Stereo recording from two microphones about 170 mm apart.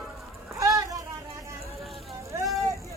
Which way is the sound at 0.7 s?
20° right (ahead or behind).